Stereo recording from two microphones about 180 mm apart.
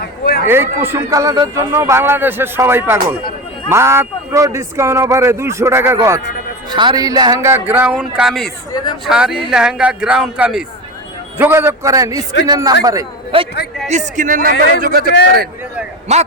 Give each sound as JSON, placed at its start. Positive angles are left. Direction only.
{"t": 0.4, "sound": "a man's voice", "side_deg": -15}
{"t": 8.7, "sound": "speech", "side_deg": 25}
{"t": 9.0, "sound": "a man's voice", "side_deg": -5}
{"t": 13.3, "sound": "a man's voice", "side_deg": -30}
{"t": 16.1, "sound": "speech", "side_deg": -40}